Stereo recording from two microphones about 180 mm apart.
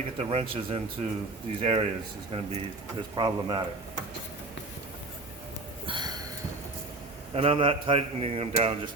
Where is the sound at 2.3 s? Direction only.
35° right (ahead or behind).